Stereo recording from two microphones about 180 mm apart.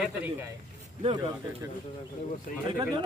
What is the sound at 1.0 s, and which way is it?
Speech, 30° right (ahead or behind).